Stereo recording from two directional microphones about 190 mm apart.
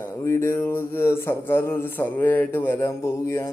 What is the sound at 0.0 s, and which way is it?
A man's voice, 15° left (ahead or behind).